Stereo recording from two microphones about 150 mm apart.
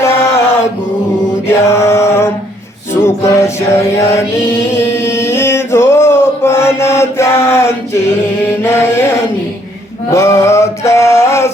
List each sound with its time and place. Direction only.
0.0 s chant: 15° left (ahead or behind)
1.5 s mantra: 15° left (ahead or behind)
2.9 s music: 15° left (ahead or behind)
4.8 s male singing: 20° left (ahead or behind)
8.4 s mantra: 15° left (ahead or behind)
10.1 s male singing: 20° left (ahead or behind)